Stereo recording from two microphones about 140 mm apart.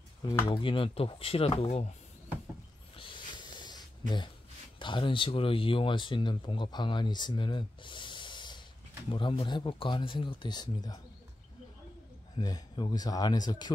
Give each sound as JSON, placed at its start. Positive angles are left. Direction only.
{"t": 0.5, "sound": "speech", "side_deg": 35}
{"t": 3.0, "sound": "snort", "side_deg": 30}
{"t": 4.7, "sound": "speech", "side_deg": 35}
{"t": 12.4, "sound": "speech", "side_deg": 30}